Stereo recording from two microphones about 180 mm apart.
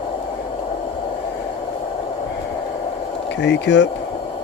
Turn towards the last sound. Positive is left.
turn(degrees=80)